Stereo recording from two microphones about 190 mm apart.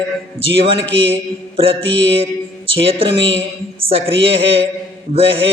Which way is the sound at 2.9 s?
30° right (ahead or behind).